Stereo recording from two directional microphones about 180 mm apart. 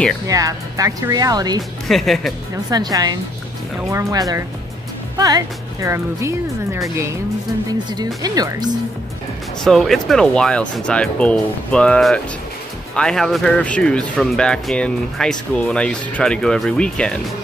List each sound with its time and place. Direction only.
0.3 s speech: 20° right (ahead or behind)
1.9 s speech: centre (ahead or behind)
2.5 s speech: 20° right (ahead or behind)
8.2 s speech: 20° right (ahead or behind)
9.7 s speech: centre (ahead or behind)